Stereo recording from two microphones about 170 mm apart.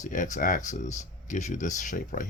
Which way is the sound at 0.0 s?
50° left (ahead or behind).